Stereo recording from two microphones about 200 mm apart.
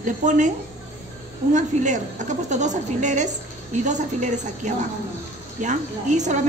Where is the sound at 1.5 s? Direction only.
40° right (ahead or behind).